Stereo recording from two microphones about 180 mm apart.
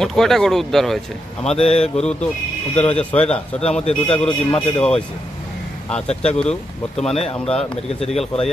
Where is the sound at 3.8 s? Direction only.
35° left (ahead or behind).